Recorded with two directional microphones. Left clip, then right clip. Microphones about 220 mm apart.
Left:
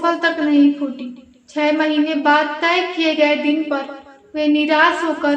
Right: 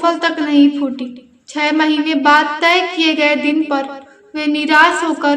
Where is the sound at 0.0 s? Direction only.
50° right (ahead or behind).